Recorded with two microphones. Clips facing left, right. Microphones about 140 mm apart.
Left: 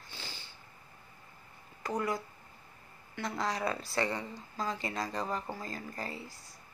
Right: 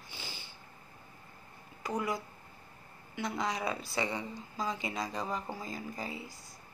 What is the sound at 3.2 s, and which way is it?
Speech, centre (ahead or behind).